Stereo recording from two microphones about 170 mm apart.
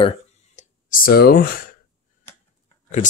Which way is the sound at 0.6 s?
55° left (ahead or behind).